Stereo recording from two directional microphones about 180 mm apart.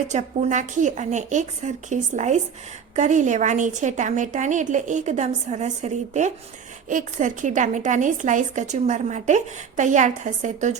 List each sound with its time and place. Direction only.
0.1 s a woman's voice: 40° right (ahead or behind)